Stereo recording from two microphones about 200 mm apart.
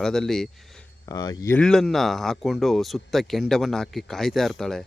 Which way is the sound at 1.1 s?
20° left (ahead or behind).